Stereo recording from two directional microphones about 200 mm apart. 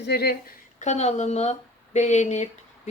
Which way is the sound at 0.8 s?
35° left (ahead or behind).